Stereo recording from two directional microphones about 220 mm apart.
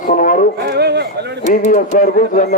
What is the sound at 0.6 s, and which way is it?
Speech, 50° right (ahead or behind).